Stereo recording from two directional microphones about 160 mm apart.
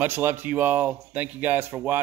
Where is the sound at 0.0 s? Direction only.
15° right (ahead or behind).